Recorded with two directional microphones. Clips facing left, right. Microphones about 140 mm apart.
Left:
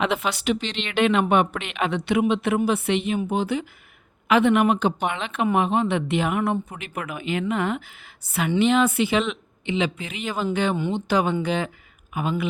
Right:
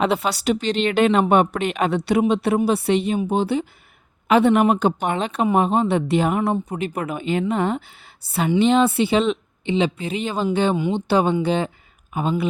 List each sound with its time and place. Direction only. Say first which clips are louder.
0.0 s a woman's voice: right 3 dB; 35° right (ahead or behind)